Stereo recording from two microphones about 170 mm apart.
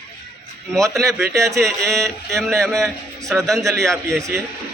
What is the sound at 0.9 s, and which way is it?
A man's voice, centre (ahead or behind).